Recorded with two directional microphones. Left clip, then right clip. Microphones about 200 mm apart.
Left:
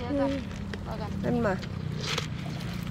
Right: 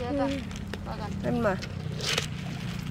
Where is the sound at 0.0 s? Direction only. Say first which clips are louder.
Even; 45° right (ahead or behind).